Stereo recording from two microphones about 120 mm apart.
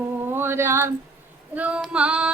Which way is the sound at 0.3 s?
20° right (ahead or behind).